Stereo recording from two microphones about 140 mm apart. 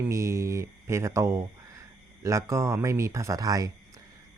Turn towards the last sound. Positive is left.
turn(degrees=-25)  # may be behind; listen again after turning